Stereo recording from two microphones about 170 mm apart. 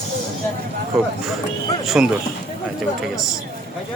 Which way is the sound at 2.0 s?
5° right (ahead or behind).